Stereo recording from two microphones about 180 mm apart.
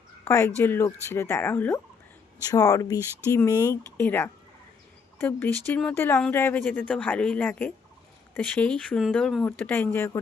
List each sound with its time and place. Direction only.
0.3 s speech: 15° left (ahead or behind)